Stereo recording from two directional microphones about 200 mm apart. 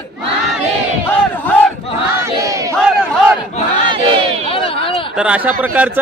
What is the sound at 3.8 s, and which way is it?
Battle cry, 25° right (ahead or behind).